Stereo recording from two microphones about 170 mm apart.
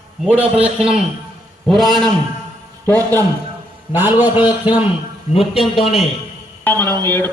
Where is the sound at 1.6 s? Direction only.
Centre (ahead or behind).